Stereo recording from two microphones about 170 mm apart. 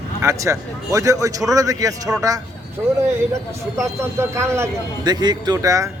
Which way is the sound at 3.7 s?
15° right (ahead or behind).